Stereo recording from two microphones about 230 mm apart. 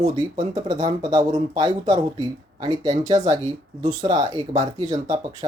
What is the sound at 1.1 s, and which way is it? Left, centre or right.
Speech, centre.